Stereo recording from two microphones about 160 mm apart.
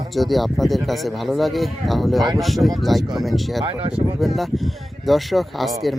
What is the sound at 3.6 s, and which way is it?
Speech, 35° right (ahead or behind).